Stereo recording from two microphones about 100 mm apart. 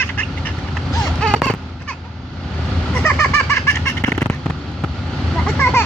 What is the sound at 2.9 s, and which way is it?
Vehicle, 25° left (ahead or behind).